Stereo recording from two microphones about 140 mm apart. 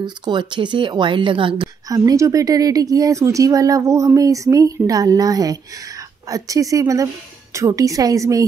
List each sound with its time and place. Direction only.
0.0 s speech: 30° right (ahead or behind)
1.9 s speech: 25° right (ahead or behind)